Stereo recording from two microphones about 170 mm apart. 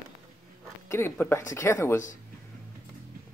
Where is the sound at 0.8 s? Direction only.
15° left (ahead or behind).